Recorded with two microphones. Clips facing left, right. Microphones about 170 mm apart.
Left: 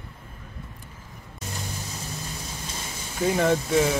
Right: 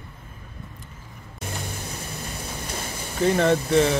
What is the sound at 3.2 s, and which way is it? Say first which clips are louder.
Speech: right 2 dB; 5° left (ahead or behind).